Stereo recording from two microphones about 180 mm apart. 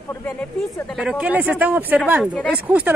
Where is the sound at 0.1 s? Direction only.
10° left (ahead or behind).